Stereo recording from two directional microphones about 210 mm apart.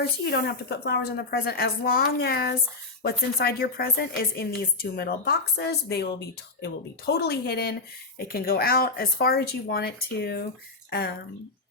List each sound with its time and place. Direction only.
0.3 s a woman's voice: 50° left (ahead or behind)